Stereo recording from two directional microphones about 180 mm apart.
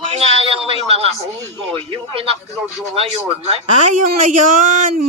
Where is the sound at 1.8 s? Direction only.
35° right (ahead or behind).